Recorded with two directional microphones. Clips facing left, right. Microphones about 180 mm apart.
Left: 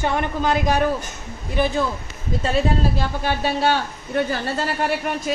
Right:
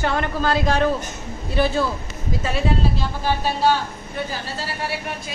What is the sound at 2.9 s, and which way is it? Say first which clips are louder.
Speech: even; 65° left (ahead or behind).